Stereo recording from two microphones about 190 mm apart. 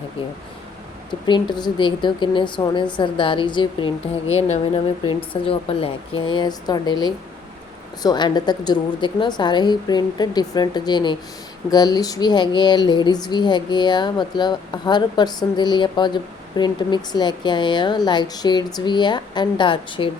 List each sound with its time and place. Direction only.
1.3 s speech: 25° left (ahead or behind)